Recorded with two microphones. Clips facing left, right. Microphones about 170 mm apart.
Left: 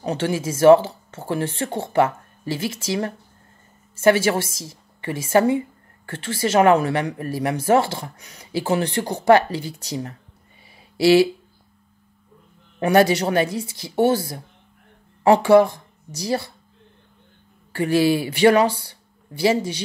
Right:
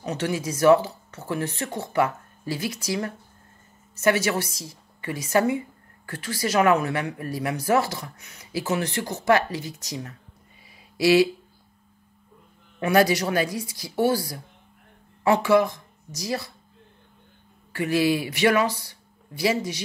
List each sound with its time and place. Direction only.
0.0 s a woman's voice: 30° left (ahead or behind)
12.7 s speech: 25° left (ahead or behind)
17.7 s speech: 30° left (ahead or behind)